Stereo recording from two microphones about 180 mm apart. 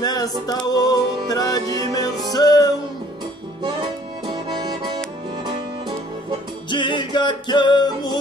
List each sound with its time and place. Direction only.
0.0 s music: 20° left (ahead or behind)
4.3 s accordion: 25° right (ahead or behind)
6.7 s music: 25° left (ahead or behind)